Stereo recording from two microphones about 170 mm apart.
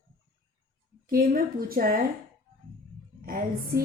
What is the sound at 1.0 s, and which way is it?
A woman's voice, 55° right (ahead or behind).